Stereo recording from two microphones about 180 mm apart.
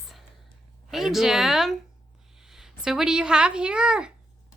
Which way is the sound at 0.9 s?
Centre (ahead or behind).